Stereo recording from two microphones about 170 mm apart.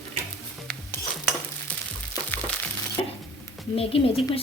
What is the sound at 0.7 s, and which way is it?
Stir, 5° left (ahead or behind).